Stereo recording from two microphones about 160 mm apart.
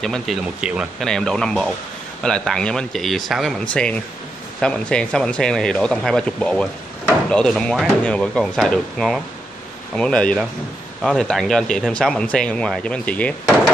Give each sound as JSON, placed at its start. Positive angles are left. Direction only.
{"t": 0.0, "sound": "speech", "side_deg": 0}